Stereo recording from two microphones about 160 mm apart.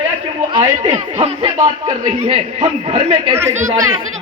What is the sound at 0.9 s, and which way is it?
Speech, 40° right (ahead or behind).